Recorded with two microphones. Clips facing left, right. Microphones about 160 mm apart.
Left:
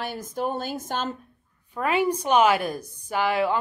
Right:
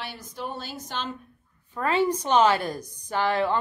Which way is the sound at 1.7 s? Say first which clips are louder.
Even; 10° left (ahead or behind).